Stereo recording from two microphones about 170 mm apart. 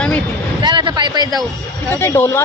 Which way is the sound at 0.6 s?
25° right (ahead or behind).